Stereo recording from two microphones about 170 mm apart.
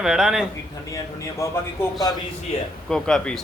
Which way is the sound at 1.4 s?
15° left (ahead or behind).